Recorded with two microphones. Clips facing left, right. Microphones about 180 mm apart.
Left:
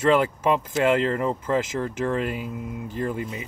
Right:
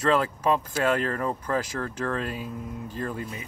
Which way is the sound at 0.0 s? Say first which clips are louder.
Left 3 dB; 25° left (ahead or behind).